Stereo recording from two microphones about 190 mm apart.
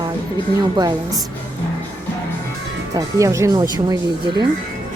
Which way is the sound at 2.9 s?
20° right (ahead or behind).